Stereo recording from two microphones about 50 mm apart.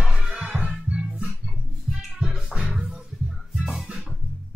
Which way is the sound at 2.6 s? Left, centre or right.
Right.